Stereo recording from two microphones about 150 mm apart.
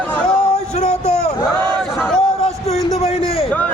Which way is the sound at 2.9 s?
40° left (ahead or behind).